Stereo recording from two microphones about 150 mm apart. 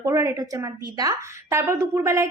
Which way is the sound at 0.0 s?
20° right (ahead or behind).